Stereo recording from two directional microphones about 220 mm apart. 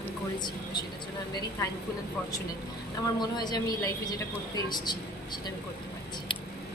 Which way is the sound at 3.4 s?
15° left (ahead or behind).